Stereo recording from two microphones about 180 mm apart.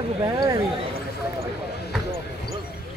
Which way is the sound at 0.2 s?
20° right (ahead or behind).